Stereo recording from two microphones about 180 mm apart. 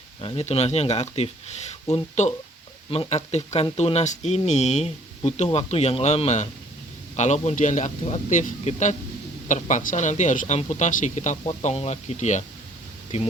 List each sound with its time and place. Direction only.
0.2 s speech: 35° left (ahead or behind)